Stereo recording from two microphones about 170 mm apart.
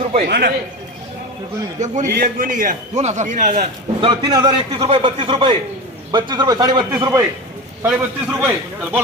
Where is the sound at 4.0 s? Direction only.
25° right (ahead or behind).